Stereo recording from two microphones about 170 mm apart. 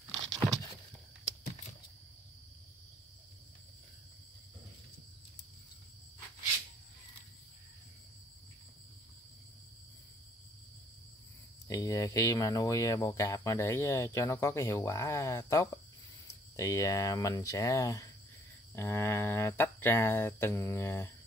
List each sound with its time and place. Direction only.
0.4 s vehicle: centre (ahead or behind)
11.6 s speech: 20° left (ahead or behind)